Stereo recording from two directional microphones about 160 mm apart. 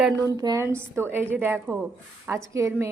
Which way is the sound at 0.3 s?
20° right (ahead or behind).